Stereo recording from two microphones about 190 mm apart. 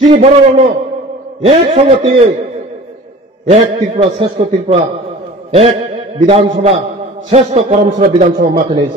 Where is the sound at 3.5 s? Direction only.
30° right (ahead or behind).